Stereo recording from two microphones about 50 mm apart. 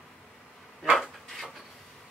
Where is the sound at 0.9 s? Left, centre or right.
Centre.